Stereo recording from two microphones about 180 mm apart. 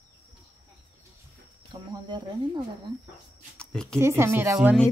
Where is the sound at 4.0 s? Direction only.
15° right (ahead or behind).